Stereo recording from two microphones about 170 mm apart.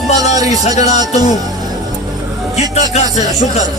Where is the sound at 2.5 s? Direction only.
40° left (ahead or behind).